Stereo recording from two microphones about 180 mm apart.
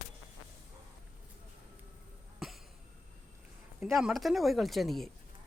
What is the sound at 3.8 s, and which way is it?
Speech, centre (ahead or behind).